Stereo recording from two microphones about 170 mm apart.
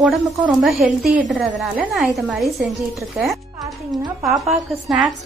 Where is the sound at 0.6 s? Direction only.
Centre (ahead or behind).